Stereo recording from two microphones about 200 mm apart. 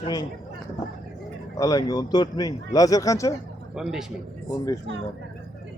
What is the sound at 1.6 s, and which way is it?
Speech, 20° left (ahead or behind).